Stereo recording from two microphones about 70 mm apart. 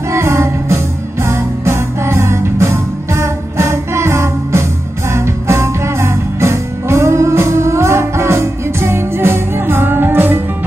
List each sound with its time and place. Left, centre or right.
0.1 s music: right